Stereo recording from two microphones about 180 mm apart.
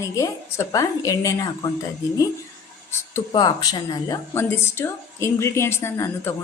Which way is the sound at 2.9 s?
20° left (ahead or behind).